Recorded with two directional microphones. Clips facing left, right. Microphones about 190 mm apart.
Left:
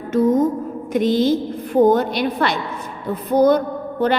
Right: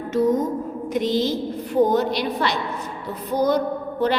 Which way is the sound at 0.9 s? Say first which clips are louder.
Left 5 dB; 55° left (ahead or behind).